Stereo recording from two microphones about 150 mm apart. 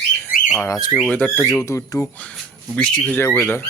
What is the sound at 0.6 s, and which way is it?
Speech, 25° left (ahead or behind).